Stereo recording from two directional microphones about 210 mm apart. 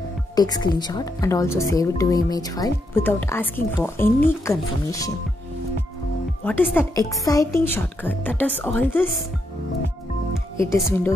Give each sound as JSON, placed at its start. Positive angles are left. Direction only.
{"t": 0.4, "sound": "a woman's voice", "side_deg": 20}
{"t": 6.4, "sound": "a woman's voice", "side_deg": 10}
{"t": 10.7, "sound": "a woman's voice", "side_deg": 10}